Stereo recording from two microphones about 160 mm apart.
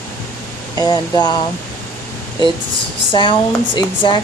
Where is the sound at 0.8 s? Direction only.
25° left (ahead or behind).